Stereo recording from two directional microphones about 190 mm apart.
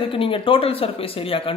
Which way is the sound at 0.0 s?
30° left (ahead or behind).